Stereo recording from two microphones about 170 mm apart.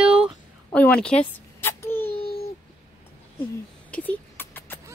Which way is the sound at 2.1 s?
60° left (ahead or behind).